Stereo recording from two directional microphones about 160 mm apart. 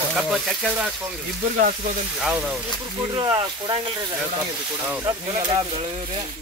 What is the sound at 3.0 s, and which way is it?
Speech, 30° right (ahead or behind).